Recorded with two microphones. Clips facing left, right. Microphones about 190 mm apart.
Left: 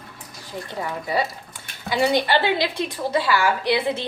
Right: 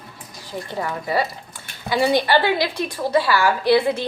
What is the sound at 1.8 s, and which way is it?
A woman's voice, 20° left (ahead or behind).